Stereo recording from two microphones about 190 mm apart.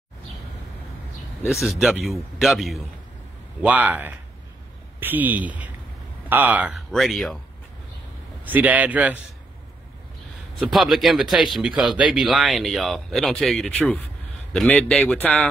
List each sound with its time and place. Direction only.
1.5 s a man's voice: centre (ahead or behind)
8.5 s a man's voice: 10° right (ahead or behind)
10.7 s speech: centre (ahead or behind)